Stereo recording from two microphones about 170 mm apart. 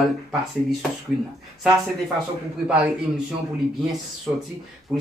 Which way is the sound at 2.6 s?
10° right (ahead or behind).